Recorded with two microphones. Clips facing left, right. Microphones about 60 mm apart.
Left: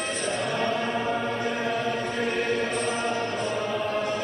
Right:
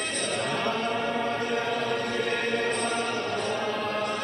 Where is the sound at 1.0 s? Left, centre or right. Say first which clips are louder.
Left 1 dB; centre.